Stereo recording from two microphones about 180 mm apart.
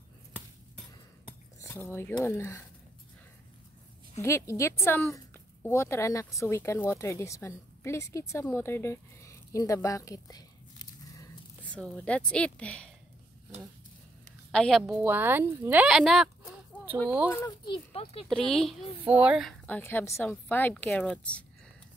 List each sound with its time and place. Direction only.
1.6 s a woman's voice: 15° left (ahead or behind)
4.2 s a woman's voice: 15° left (ahead or behind)
11.6 s a woman's voice: 5° left (ahead or behind)
14.5 s a woman's voice: 5° left (ahead or behind)
15.0 s speech: 10° right (ahead or behind)
17.3 s a woman's voice: 15° left (ahead or behind)
17.6 s speech: 30° left (ahead or behind)
18.3 s a woman's voice: centre (ahead or behind)
19.6 s a woman's voice: 10° left (ahead or behind)